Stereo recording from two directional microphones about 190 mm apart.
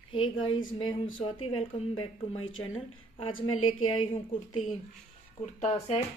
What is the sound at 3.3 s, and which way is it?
Speech, 90° left.